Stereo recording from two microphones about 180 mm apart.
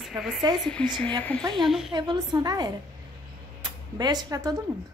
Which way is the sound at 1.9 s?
25° right (ahead or behind).